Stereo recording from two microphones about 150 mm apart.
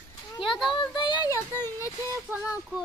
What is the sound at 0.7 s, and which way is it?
Speech, 30° left (ahead or behind).